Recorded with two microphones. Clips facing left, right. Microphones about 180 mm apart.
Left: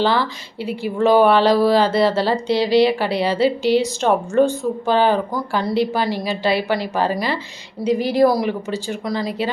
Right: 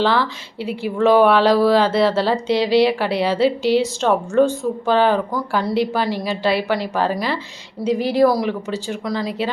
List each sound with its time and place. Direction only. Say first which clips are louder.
0.0 s a woman's voice: even; centre (ahead or behind)
7.9 s speech: right 1 dB; 45° left (ahead or behind)
8.4 s a woman's voice: even; centre (ahead or behind)